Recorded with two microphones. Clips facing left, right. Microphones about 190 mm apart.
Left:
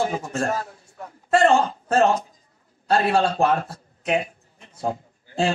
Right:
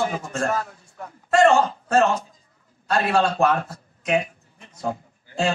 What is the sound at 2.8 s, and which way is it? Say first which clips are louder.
Speech: left 1 dB; 30° left (ahead or behind).